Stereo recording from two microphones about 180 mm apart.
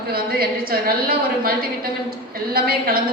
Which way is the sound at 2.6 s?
55° right (ahead or behind).